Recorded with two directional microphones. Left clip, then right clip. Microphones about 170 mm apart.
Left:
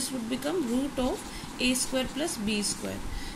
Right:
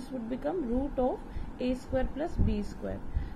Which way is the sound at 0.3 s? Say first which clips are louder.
Left 2 dB; 10° left (ahead or behind).